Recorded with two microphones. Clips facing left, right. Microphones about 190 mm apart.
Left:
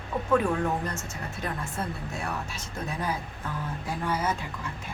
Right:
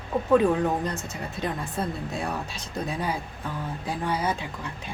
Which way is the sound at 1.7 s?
35° right (ahead or behind).